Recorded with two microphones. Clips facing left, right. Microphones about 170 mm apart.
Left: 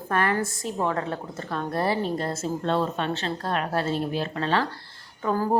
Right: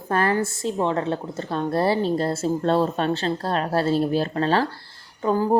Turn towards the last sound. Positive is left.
turn(degrees=-20)  # may be behind; listen again after turning